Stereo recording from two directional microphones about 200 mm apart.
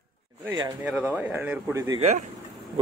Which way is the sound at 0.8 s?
5° right (ahead or behind).